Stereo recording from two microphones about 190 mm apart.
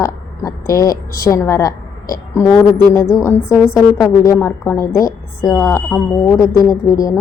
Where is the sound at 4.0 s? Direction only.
15° left (ahead or behind).